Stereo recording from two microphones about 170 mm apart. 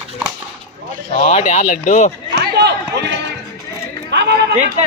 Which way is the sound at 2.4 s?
70° right (ahead or behind).